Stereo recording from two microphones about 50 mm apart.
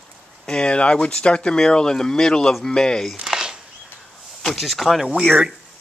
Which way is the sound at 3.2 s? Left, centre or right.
Centre.